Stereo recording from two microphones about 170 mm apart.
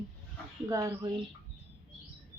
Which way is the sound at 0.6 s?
20° right (ahead or behind).